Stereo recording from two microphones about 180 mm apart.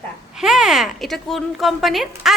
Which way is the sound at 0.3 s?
5° right (ahead or behind).